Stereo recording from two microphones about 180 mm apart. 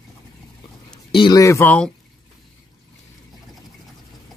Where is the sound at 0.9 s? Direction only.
25° left (ahead or behind); by 1.9 s 10° left (ahead or behind).